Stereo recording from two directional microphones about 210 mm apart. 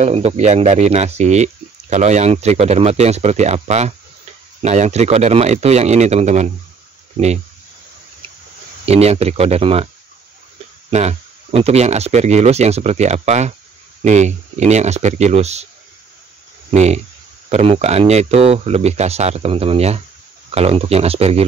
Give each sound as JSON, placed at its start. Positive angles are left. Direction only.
{"t": 0.0, "sound": "speech", "side_deg": -30}
{"t": 8.8, "sound": "speech", "side_deg": -30}
{"t": 10.9, "sound": "speech", "side_deg": -30}
{"t": 16.7, "sound": "speech", "side_deg": -30}